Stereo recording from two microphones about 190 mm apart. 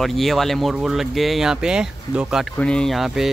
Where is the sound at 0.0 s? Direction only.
Centre (ahead or behind).